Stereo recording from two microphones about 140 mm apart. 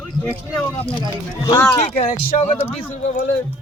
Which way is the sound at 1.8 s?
50° left (ahead or behind).